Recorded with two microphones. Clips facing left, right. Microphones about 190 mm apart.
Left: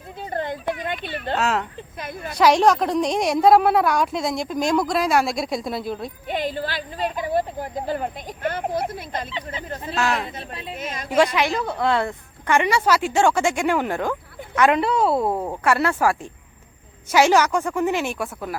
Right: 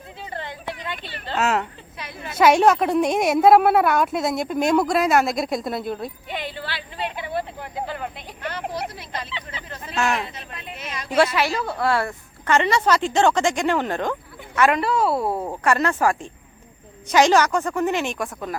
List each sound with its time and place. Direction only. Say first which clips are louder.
0.2 s a woman's voice: left 7 dB; 50° left (ahead or behind)
1.4 s a woman's voice: right 2 dB; 5° right (ahead or behind)
2.0 s speech: left 3 dB; 50° left (ahead or behind)
2.3 s a woman's voice: right 1 dB; 5° right (ahead or behind)
6.2 s speech: left 6 dB; 45° left (ahead or behind)
9.9 s a woman's voice: even; centre (ahead or behind)
10.3 s speech: left 4 dB; 30° left (ahead or behind)
11.3 s a woman's voice: left 1 dB; 15° left (ahead or behind)
14.8 s a woman's voice: left 1 dB; centre (ahead or behind)
15.4 s a woman's voice: even; 10° left (ahead or behind)